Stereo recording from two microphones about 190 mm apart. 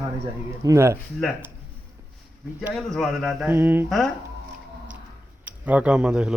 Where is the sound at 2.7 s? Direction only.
Centre (ahead or behind).